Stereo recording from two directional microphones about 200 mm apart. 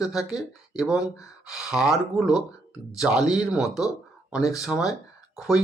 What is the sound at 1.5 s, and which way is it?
Speech, centre (ahead or behind).